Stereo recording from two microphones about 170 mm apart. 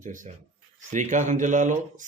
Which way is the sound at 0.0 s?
50° right (ahead or behind).